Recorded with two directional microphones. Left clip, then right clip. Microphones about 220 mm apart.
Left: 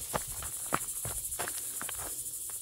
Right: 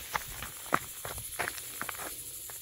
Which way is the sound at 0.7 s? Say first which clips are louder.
Right 3 dB; 20° right (ahead or behind).